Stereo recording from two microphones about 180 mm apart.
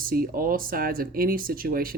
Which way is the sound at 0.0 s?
50° right (ahead or behind).